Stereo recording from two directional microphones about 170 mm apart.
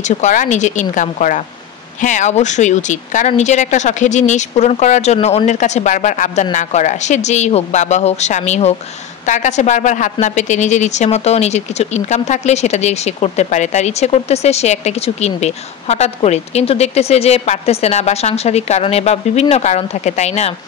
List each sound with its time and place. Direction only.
0.0 s speech: 45° left (ahead or behind)